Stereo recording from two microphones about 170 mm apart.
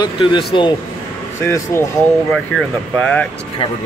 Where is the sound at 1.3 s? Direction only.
15° left (ahead or behind).